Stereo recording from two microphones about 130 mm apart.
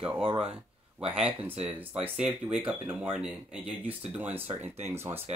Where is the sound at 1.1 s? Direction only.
10° right (ahead or behind).